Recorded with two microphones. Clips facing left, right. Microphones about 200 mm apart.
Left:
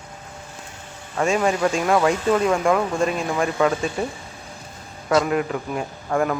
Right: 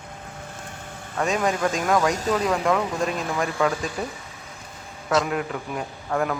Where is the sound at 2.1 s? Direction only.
40° right (ahead or behind).